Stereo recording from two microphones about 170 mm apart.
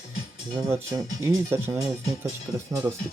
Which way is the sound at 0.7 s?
15° right (ahead or behind).